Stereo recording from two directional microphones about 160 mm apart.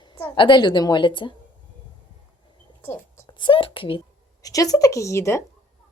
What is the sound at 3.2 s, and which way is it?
Speech, 30° left (ahead or behind).